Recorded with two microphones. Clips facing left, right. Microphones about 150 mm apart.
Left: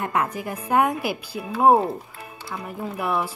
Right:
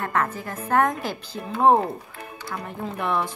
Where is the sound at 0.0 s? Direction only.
15° left (ahead or behind).